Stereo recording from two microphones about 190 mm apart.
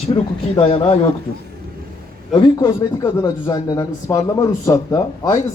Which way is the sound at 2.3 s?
25° left (ahead or behind).